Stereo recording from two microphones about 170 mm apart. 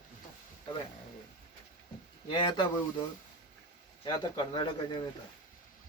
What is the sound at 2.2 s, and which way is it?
Speech, 30° left (ahead or behind).